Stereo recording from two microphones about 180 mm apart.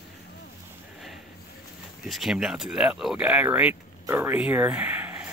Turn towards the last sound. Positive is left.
turn(degrees=-10)  # may be behind; listen again after turning